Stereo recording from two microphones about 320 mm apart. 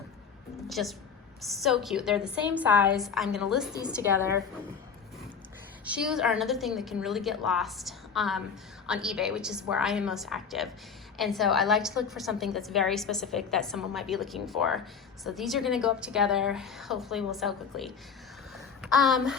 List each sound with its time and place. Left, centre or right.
0.7 s a woman's voice: centre
5.8 s a woman's voice: centre
18.5 s a sound: centre